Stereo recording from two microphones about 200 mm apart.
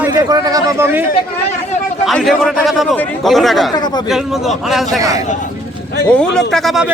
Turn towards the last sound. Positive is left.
turn(degrees=0)  # may be behind; listen again after turning